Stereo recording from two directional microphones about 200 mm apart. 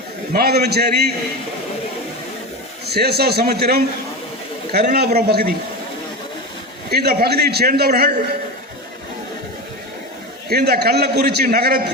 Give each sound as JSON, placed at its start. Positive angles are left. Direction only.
{"t": 0.3, "sound": "a man's voice", "side_deg": -50}
{"t": 2.8, "sound": "a man's voice", "side_deg": -55}
{"t": 6.9, "sound": "a man's voice", "side_deg": -50}
{"t": 10.5, "sound": "a man's voice", "side_deg": -55}